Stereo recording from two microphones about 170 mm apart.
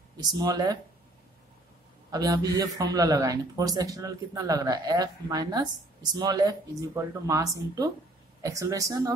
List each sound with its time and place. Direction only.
0.2 s a man's voice: 25° right (ahead or behind)
2.0 s a man's voice: 20° right (ahead or behind)